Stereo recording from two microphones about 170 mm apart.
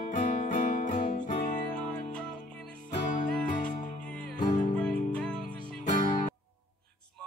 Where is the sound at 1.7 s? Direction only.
5° left (ahead or behind).